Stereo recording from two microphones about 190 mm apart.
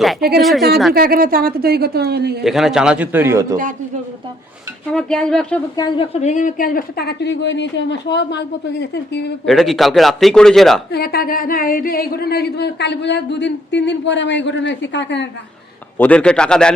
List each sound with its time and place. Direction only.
0.2 s a woman's voice: 55° right (ahead or behind)
2.4 s a man's voice: centre (ahead or behind)
4.9 s a man's voice: 5° left (ahead or behind)
5.7 s a woman's voice: 20° left (ahead or behind)
6.1 s speech: 40° left (ahead or behind); by 9.3 s 65° left (ahead or behind)
9.5 s a man's voice: centre (ahead or behind)
10.9 s speech: 55° left (ahead or behind)
16.0 s a man's voice: 5° left (ahead or behind)